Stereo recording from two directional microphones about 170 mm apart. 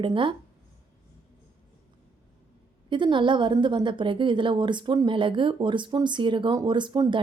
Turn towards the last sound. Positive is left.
turn(degrees=-25)  # may be behind; listen again after turning